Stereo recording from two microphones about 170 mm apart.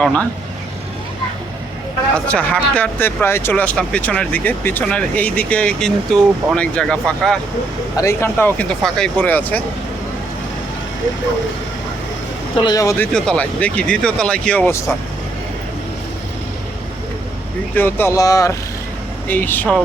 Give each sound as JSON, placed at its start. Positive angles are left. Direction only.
{"t": 0.0, "sound": "speech", "side_deg": 5}
{"t": 2.1, "sound": "speech", "side_deg": 5}
{"t": 7.9, "sound": "speech", "side_deg": 15}
{"t": 12.5, "sound": "speech", "side_deg": 25}
{"t": 13.1, "sound": "speech", "side_deg": 5}
{"t": 17.7, "sound": "speech", "side_deg": 10}